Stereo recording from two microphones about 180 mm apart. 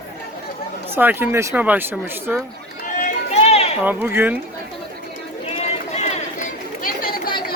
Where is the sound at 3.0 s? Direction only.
35° left (ahead or behind).